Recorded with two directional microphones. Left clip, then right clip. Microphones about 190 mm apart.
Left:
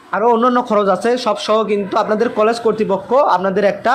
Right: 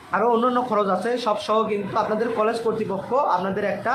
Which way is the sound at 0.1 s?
30° left (ahead or behind).